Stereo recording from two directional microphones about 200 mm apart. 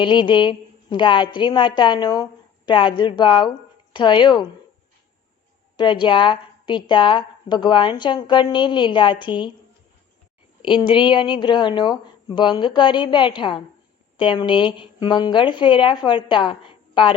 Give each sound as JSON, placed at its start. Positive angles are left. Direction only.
{"t": 0.0, "sound": "a woman's voice", "side_deg": 25}
{"t": 5.7, "sound": "a woman's voice", "side_deg": 25}
{"t": 10.6, "sound": "a woman's voice", "side_deg": 25}